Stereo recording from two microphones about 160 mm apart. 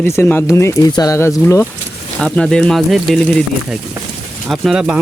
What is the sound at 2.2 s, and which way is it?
Speech, 5° left (ahead or behind).